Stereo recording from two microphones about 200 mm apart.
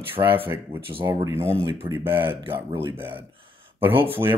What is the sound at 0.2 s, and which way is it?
Speech, 25° right (ahead or behind).